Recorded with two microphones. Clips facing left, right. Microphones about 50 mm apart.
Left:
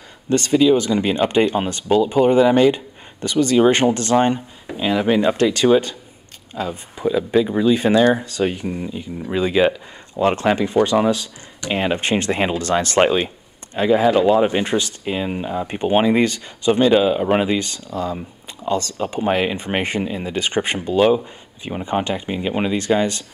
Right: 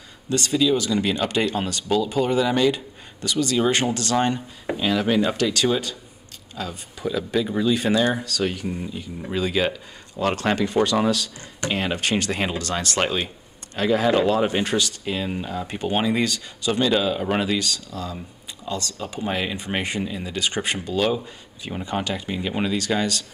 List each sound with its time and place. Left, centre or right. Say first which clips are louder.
0.3 s speech: left 6 dB; left
5.4 s speech: left 7 dB; left
8.6 s speech: left 4 dB; centre
13.7 s speech: left 4 dB; centre